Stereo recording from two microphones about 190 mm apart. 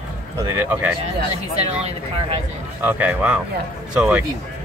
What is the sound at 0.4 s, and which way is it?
Speech, 10° right (ahead or behind).